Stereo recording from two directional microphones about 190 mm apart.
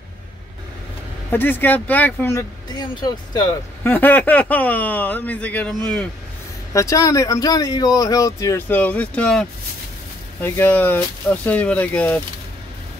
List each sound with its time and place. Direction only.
1.3 s speech: 10° left (ahead or behind)
6.7 s speech: 15° left (ahead or behind)